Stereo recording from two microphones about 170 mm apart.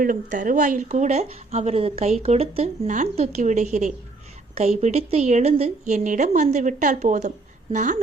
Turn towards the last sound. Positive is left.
turn(degrees=-50)  # may be behind; listen again after turning